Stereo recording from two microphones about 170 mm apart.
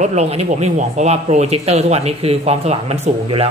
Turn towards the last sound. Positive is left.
turn(degrees=-35)  # may be behind; listen again after turning